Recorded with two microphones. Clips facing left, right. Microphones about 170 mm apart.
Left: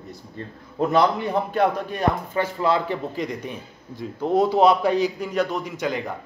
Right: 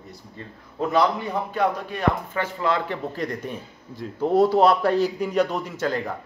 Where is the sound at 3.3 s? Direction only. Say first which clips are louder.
Even; centre (ahead or behind).